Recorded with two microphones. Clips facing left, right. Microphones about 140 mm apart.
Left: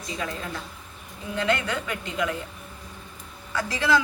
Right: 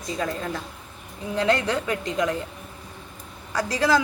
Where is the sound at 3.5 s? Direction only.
40° right (ahead or behind).